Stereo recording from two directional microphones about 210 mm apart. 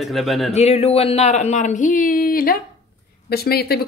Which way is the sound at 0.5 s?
30° left (ahead or behind).